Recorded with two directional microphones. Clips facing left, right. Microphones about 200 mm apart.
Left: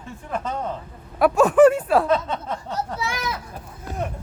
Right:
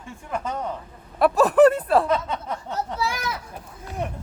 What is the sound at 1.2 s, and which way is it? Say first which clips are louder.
Speech: left 1 dB; centre (ahead or behind).